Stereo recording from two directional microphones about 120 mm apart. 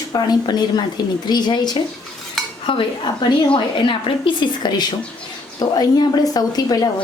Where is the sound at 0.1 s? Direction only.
35° left (ahead or behind).